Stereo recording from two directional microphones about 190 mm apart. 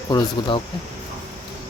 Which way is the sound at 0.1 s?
25° left (ahead or behind).